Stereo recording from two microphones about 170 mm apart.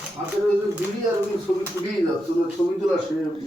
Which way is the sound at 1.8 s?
15° right (ahead or behind).